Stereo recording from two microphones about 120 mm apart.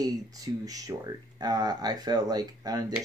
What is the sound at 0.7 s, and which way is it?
Speech, 30° right (ahead or behind).